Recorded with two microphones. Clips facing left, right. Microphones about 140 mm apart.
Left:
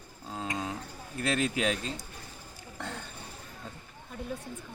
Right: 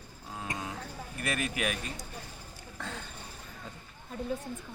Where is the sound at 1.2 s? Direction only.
25° left (ahead or behind).